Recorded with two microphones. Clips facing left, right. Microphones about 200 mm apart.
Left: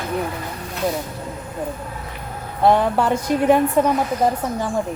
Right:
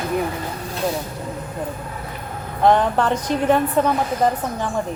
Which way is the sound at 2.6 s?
10° left (ahead or behind).